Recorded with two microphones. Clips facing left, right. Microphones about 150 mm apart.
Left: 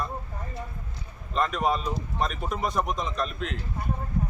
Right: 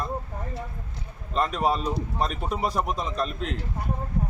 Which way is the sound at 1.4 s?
35° right (ahead or behind).